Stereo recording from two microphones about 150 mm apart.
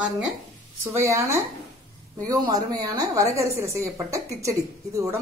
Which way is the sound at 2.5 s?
25° right (ahead or behind).